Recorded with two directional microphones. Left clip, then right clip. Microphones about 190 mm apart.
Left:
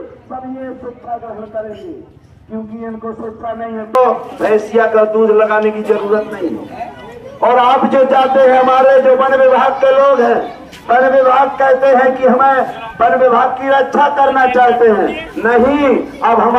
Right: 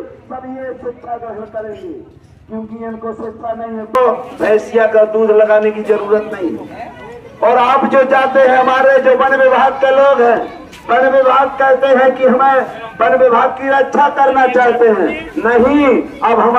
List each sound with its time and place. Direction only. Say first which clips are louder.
2.8 s speech: right 2 dB; 55° right (ahead or behind)
3.9 s a man's voice: left 1 dB; centre (ahead or behind)
7.3 s a man's voice: even; 20° right (ahead or behind); by 16.4 s 5° left (ahead or behind)